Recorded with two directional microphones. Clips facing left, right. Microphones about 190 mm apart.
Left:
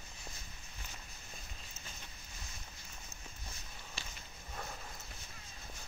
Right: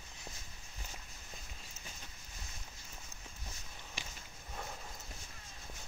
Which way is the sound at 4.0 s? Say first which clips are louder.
Right 2 dB; 15° right (ahead or behind).